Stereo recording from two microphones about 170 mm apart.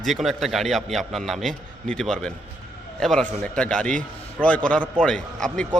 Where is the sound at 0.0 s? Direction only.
Centre (ahead or behind).